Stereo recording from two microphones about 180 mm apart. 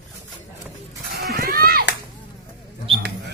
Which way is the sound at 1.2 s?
55° right (ahead or behind).